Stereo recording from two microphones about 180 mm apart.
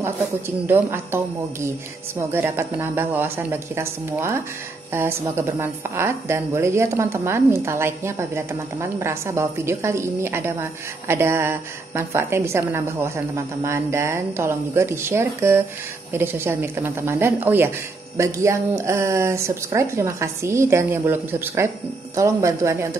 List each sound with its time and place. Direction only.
0.7 s a woman's voice: 15° right (ahead or behind)